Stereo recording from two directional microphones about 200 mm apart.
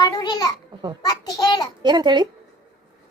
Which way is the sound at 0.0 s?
20° left (ahead or behind).